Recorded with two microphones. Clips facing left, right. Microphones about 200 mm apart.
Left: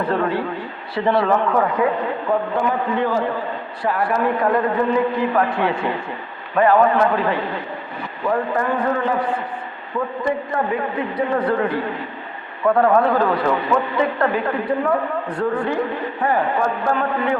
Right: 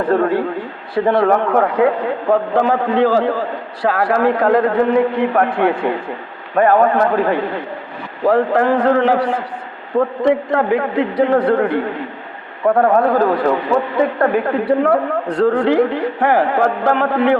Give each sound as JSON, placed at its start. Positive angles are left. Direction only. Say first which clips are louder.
{"t": 0.0, "sound": "a man's voice", "louder": "right 5 dB", "side_deg": -50}
{"t": 2.6, "sound": "a man's voice", "louder": "right 6 dB", "side_deg": -90}
{"t": 6.6, "sound": "a man's voice", "louder": "right 2 dB", "side_deg": -45}
{"t": 8.3, "sound": "a man's voice", "louder": "right 7 dB", "side_deg": -75}
{"t": 12.6, "sound": "a man's voice", "louder": "right 2 dB", "side_deg": -40}
{"t": 14.3, "sound": "a man's voice", "louder": "right 5 dB", "side_deg": -70}